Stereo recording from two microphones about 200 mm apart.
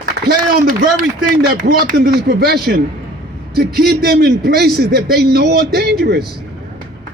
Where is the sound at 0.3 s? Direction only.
50° right (ahead or behind).